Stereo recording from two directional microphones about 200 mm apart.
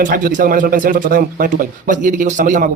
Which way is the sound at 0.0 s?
40° right (ahead or behind).